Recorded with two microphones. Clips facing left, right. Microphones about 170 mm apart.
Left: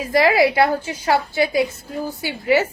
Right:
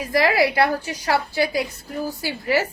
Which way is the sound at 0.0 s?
25° left (ahead or behind).